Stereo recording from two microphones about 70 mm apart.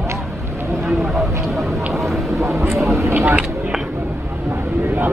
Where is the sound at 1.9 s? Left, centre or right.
Centre.